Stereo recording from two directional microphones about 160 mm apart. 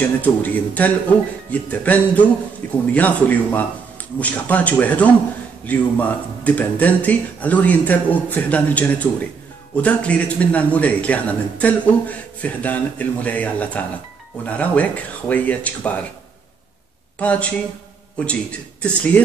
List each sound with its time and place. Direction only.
0.2 s speech: 10° left (ahead or behind)
17.2 s speech: 10° left (ahead or behind)